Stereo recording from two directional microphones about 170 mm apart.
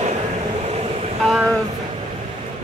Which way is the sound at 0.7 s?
40° right (ahead or behind).